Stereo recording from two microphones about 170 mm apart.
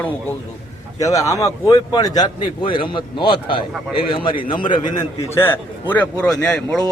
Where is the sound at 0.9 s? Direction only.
20° left (ahead or behind).